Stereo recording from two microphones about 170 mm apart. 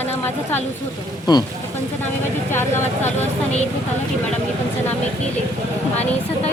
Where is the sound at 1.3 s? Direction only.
25° left (ahead or behind).